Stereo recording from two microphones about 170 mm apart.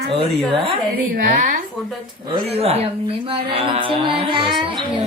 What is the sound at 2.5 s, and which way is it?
Speech, 35° right (ahead or behind).